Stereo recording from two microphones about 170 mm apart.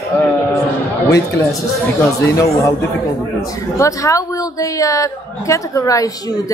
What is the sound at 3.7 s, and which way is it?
A woman's voice, 20° left (ahead or behind).